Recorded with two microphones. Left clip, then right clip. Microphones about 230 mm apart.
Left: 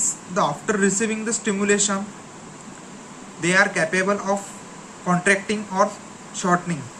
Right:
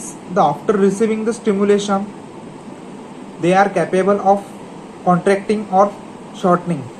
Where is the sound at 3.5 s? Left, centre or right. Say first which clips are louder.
Right 5 dB; left.